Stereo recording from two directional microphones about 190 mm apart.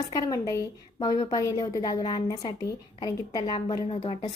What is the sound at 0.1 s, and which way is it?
A woman's voice, 20° left (ahead or behind).